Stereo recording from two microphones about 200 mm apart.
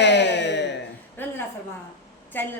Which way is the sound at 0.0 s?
60° left (ahead or behind).